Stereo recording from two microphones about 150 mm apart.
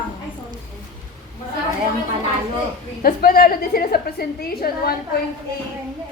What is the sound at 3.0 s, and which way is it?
A woman's voice, 80° left.